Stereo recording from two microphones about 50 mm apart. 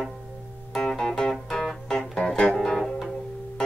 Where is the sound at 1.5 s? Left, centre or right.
Centre.